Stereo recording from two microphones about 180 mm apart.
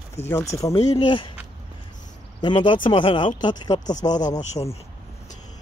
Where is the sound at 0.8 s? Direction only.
30° left (ahead or behind).